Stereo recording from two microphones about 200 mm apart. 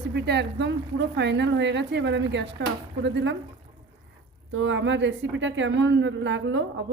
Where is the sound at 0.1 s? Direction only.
55° right (ahead or behind).